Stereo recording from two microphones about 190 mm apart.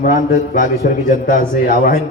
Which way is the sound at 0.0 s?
50° left (ahead or behind).